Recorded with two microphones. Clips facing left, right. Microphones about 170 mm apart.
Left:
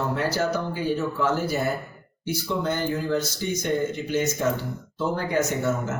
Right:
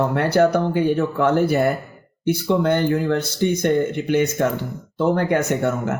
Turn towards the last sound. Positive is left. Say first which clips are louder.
# right 4 dB
turn(degrees=-60)  # may be behind; listen again after turning